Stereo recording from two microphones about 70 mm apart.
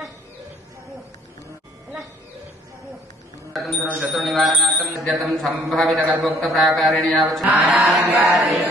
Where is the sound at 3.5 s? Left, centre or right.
Centre.